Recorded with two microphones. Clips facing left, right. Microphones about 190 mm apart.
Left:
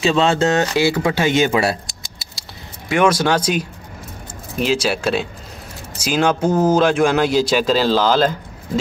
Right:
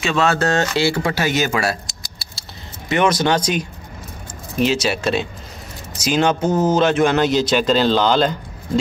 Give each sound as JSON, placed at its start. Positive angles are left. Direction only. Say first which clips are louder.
{"t": 0.0, "sound": "speech", "louder": "left 3 dB", "side_deg": 30}
{"t": 2.9, "sound": "speech", "louder": "left 1 dB", "side_deg": 10}